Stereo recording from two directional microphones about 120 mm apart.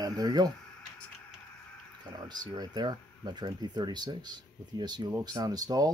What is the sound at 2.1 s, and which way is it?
Speech, 35° right (ahead or behind).